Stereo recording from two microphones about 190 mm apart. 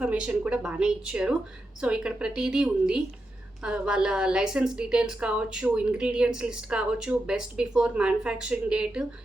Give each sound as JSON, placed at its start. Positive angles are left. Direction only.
{"t": 0.0, "sound": "a woman's voice", "side_deg": -5}